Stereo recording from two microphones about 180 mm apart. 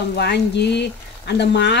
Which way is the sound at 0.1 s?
70° left (ahead or behind).